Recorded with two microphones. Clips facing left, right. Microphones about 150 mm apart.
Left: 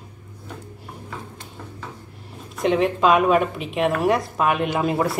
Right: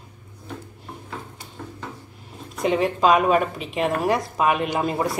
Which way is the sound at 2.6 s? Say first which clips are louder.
Left 1 dB; centre (ahead or behind).